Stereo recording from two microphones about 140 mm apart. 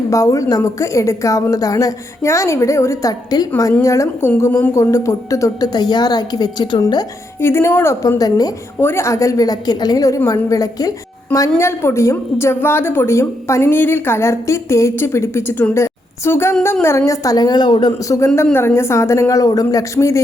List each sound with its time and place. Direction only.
0.1 s a woman's voice: 25° left (ahead or behind)